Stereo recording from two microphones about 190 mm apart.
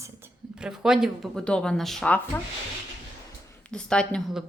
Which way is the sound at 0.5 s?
5° right (ahead or behind).